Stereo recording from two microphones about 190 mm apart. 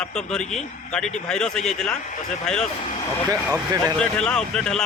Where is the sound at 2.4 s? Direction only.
5° left (ahead or behind).